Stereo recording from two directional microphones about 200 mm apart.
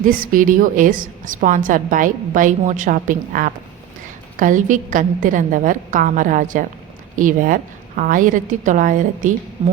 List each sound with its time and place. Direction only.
0.0 s a woman's voice: 45° right (ahead or behind)
9.6 s a woman's voice: 30° right (ahead or behind)